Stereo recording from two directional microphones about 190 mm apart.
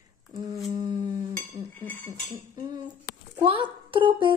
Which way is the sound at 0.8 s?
20° right (ahead or behind).